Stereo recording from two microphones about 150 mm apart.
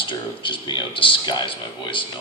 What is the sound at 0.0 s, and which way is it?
Speech, 35° left (ahead or behind).